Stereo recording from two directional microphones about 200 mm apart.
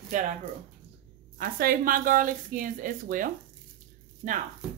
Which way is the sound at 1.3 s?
45° right (ahead or behind).